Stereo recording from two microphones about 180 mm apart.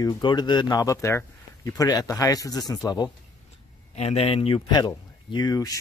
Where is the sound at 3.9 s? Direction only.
35° left (ahead or behind).